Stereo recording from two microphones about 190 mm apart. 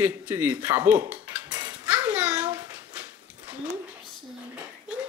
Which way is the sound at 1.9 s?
10° right (ahead or behind).